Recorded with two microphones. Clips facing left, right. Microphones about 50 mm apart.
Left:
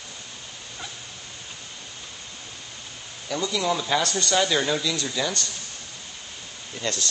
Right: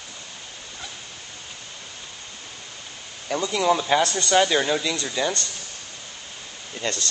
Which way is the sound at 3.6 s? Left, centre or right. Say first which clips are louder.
Right 6 dB; centre.